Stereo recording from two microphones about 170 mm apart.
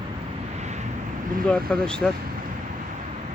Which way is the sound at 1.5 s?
5° left (ahead or behind).